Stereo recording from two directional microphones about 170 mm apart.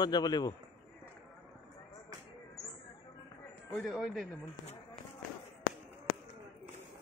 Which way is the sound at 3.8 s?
Centre (ahead or behind).